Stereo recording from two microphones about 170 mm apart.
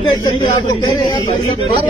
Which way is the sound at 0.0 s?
25° left (ahead or behind).